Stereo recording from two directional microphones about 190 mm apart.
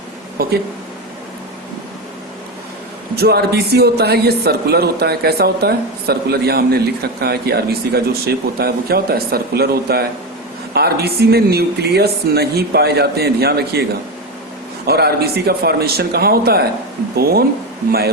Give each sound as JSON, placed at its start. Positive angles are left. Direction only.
{"t": 0.4, "sound": "speech", "side_deg": -55}
{"t": 3.2, "sound": "a man's voice", "side_deg": -55}
{"t": 14.8, "sound": "a man's voice", "side_deg": -55}